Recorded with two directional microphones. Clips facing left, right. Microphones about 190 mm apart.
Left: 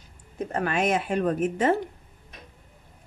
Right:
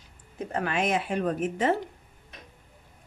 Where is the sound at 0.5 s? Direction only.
45° left (ahead or behind).